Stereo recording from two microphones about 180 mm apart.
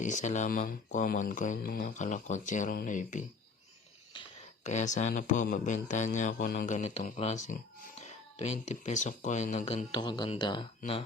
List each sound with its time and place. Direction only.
0.0 s speech: 40° left (ahead or behind)
4.6 s speech: 40° left (ahead or behind)